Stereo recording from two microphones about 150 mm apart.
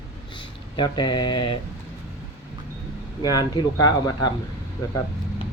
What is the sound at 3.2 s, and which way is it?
Speech, 25° left (ahead or behind).